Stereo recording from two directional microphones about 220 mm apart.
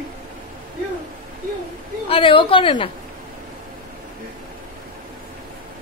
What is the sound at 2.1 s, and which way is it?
Speech, 25° left (ahead or behind).